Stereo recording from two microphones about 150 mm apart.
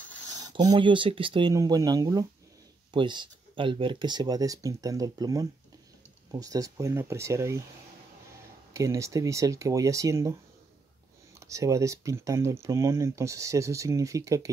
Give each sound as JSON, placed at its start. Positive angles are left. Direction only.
{"t": 0.6, "sound": "speech", "side_deg": -30}
{"t": 1.5, "sound": "speech", "side_deg": -20}
{"t": 8.7, "sound": "speech", "side_deg": -20}
{"t": 11.3, "sound": "speech", "side_deg": -20}